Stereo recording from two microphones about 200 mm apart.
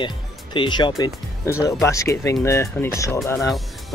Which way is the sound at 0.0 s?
25° left (ahead or behind).